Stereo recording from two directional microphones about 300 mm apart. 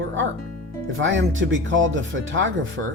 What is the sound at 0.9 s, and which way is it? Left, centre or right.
Speech, right.